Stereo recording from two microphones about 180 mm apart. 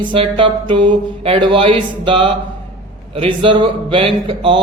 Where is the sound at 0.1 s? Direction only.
30° right (ahead or behind).